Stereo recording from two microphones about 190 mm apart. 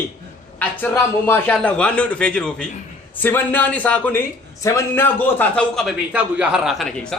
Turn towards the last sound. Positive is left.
turn(degrees=0)  # may be behind; listen again after turning